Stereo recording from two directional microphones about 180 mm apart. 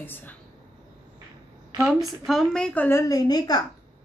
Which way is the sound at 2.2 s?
Centre (ahead or behind).